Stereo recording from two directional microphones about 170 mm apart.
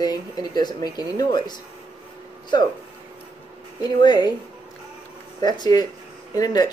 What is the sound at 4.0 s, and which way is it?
Speech, 25° left (ahead or behind).